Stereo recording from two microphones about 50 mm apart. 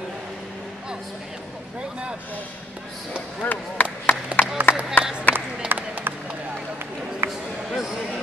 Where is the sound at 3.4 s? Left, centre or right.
Left.